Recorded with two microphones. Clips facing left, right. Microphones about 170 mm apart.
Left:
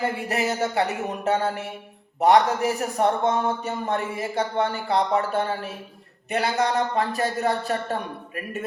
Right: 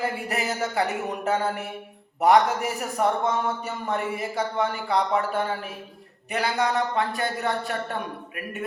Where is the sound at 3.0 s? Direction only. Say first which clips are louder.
Left 2 dB; 25° left (ahead or behind).